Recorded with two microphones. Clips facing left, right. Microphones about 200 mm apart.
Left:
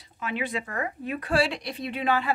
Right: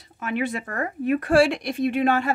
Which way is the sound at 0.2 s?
50° right (ahead or behind).